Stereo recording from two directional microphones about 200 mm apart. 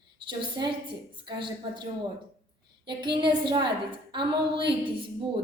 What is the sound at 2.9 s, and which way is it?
A woman's voice, 25° right (ahead or behind).